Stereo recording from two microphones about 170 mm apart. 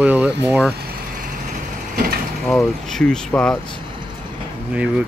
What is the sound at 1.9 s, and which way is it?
Mechanisms, 65° right (ahead or behind).